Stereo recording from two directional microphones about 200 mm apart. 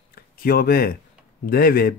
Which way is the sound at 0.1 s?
45° left (ahead or behind).